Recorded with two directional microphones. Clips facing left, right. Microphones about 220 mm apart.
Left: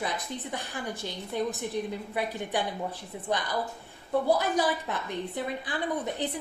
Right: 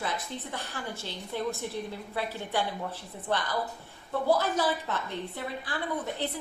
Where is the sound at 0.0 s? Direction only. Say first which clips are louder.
Left 1 dB; 15° left (ahead or behind).